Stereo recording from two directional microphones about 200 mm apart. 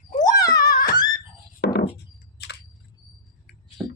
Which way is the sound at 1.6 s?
50° left (ahead or behind).